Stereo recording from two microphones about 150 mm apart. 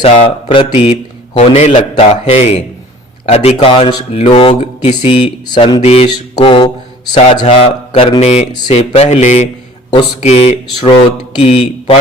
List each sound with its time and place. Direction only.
0.0 s a man's voice: 40° left (ahead or behind)